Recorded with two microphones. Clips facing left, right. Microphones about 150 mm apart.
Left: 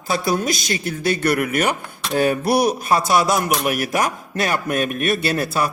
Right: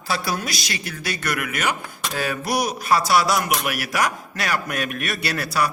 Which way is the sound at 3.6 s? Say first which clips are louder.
Left 5 dB; 45° left (ahead or behind).